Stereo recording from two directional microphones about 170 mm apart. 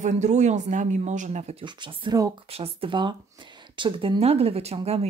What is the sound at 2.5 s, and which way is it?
Speech, 35° right (ahead or behind).